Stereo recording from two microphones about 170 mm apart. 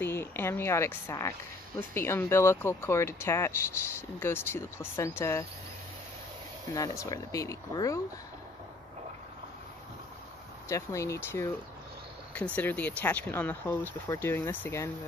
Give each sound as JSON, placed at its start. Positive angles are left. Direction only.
{"t": 0.0, "sound": "speech", "side_deg": 15}
{"t": 6.7, "sound": "speech", "side_deg": 20}
{"t": 10.7, "sound": "speech", "side_deg": 15}
{"t": 12.5, "sound": "speech", "side_deg": 10}